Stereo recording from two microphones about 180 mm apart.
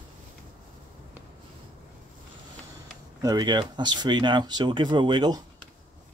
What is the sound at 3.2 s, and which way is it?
Speech, 20° right (ahead or behind).